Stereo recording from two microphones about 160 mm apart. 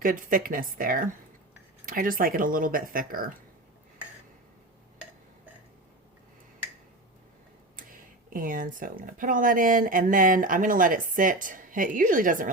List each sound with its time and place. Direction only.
0.0 s speech: 60° right (ahead or behind)
7.8 s speech: 60° right (ahead or behind)